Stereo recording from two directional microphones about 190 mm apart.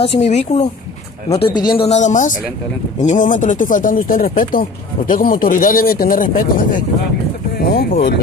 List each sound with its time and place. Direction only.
0.0 s speech: 35° left (ahead or behind)
1.6 s speech: 20° left (ahead or behind)
1.9 s speech: 40° left (ahead or behind)